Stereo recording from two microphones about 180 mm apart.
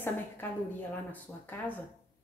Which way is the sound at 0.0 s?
10° left (ahead or behind).